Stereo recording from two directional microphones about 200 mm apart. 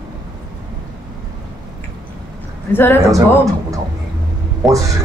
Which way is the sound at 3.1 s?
15° right (ahead or behind).